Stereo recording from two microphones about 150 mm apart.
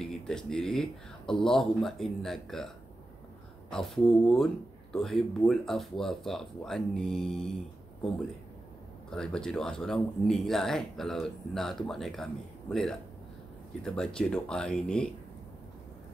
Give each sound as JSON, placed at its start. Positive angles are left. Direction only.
{"t": 0.0, "sound": "speech", "side_deg": 5}
{"t": 3.7, "sound": "speech", "side_deg": 0}
{"t": 9.1, "sound": "speech", "side_deg": 5}